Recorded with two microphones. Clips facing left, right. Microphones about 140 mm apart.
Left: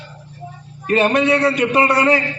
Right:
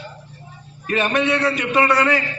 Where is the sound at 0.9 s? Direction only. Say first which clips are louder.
Left 4 dB; 35° left (ahead or behind).